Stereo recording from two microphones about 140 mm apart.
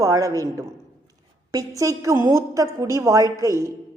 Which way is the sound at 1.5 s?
25° right (ahead or behind).